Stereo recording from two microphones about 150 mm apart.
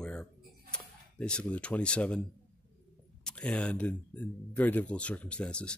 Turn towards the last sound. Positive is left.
turn(degrees=5)  # may be behind; listen again after turning